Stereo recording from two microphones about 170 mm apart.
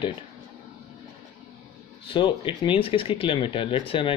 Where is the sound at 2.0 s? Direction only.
30° left (ahead or behind).